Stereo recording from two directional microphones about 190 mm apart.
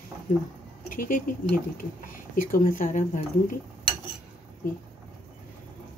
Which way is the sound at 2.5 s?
45° left (ahead or behind).